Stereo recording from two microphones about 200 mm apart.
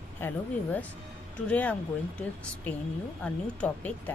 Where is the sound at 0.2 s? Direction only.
5° left (ahead or behind).